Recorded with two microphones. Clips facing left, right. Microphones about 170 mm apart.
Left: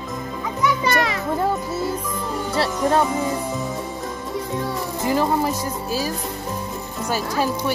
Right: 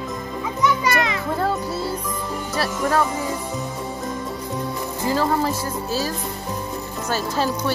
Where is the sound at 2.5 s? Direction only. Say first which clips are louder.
Left 2 dB; 25° left (ahead or behind).